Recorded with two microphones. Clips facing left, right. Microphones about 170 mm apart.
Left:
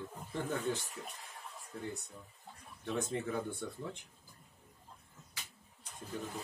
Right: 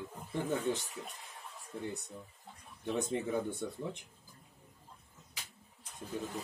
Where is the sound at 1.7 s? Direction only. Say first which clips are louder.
Right 3 dB; 25° right (ahead or behind).